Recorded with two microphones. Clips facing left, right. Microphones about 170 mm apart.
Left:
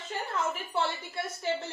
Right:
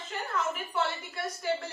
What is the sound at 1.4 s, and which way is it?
Speech, 25° left (ahead or behind).